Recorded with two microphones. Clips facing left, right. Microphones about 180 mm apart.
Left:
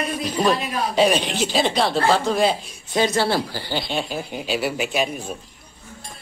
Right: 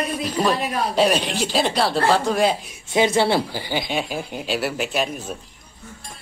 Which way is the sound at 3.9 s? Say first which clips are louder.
Even; 5° right (ahead or behind).